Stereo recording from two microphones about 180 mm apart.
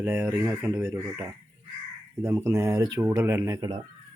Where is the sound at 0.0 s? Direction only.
10° right (ahead or behind).